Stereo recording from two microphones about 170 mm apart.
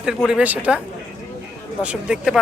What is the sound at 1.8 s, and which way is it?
Speech, 5° right (ahead or behind).